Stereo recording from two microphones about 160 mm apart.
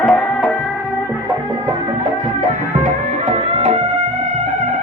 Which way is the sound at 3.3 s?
45° right (ahead or behind).